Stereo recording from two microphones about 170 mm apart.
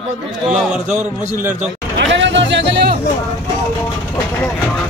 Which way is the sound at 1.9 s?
90° right.